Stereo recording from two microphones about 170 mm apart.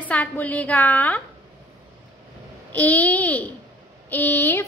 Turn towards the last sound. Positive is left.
turn(degrees=10)  # may be behind; listen again after turning